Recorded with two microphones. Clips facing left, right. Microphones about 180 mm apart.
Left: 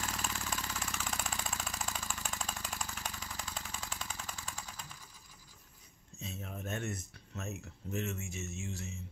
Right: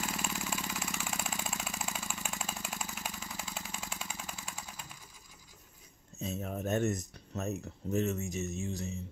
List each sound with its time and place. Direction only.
0.0 s vehicle: 10° right (ahead or behind)
6.1 s speech: 40° right (ahead or behind)